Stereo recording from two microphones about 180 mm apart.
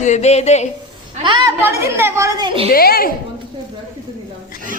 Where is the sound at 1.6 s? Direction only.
15° right (ahead or behind).